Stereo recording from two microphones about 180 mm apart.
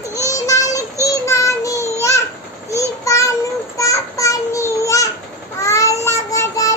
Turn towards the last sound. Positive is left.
turn(degrees=20)  # may be behind; listen again after turning